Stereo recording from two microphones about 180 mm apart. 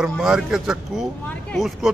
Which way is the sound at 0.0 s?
5° right (ahead or behind).